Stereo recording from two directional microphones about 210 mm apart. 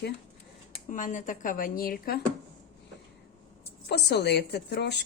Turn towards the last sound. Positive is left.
turn(degrees=50)  # may be behind; listen again after turning